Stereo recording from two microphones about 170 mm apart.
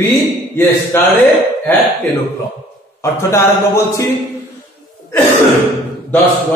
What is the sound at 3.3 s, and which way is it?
Speech, 15° left (ahead or behind).